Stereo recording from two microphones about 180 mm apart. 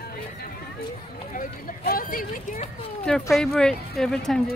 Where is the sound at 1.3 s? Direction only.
50° left (ahead or behind).